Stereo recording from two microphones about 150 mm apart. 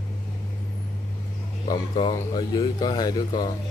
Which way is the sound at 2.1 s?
25° left (ahead or behind).